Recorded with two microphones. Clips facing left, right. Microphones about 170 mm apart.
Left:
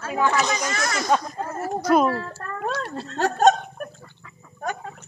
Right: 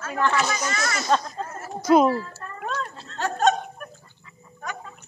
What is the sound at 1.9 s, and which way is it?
Speech, 15° right (ahead or behind).